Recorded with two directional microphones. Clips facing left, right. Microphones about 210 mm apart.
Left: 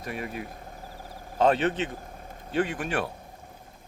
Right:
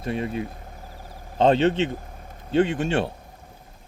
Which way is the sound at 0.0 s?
25° right (ahead or behind).